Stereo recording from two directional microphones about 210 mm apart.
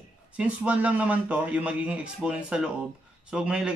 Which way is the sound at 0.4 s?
5° right (ahead or behind).